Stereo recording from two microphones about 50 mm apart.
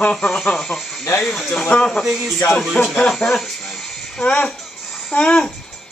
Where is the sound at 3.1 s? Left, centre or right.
Centre.